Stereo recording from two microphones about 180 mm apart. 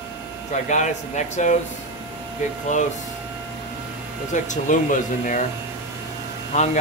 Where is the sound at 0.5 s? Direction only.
40° left (ahead or behind).